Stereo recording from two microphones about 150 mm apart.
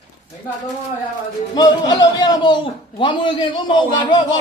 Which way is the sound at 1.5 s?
25° left (ahead or behind).